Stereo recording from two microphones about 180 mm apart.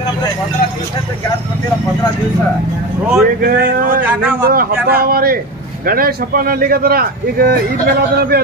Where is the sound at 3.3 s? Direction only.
55° right (ahead or behind).